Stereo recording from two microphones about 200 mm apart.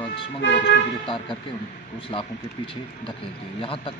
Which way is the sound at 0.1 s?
65° left (ahead or behind).